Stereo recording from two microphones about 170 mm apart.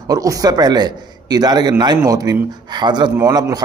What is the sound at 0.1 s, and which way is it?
A man's voice, 20° right (ahead or behind).